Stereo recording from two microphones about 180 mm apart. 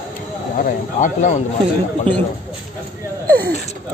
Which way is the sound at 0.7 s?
45° left (ahead or behind).